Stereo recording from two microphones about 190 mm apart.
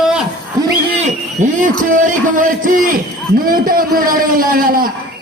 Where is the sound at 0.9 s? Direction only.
35° right (ahead or behind).